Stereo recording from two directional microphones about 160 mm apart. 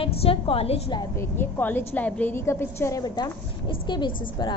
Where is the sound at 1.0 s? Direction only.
15° left (ahead or behind).